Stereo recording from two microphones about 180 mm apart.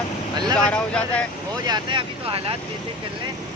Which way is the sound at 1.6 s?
25° right (ahead or behind).